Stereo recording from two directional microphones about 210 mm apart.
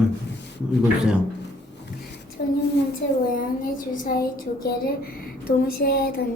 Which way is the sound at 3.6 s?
40° left (ahead or behind).